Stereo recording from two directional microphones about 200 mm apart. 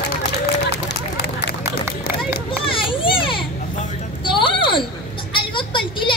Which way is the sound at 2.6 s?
25° left (ahead or behind).